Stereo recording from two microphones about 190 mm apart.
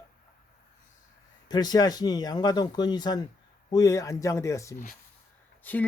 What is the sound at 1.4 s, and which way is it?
Speech, 20° left (ahead or behind).